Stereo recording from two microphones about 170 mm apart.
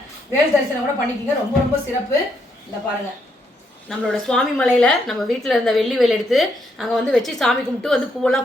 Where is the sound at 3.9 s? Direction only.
5° left (ahead or behind).